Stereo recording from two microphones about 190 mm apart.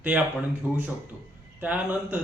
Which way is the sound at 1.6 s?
10° right (ahead or behind).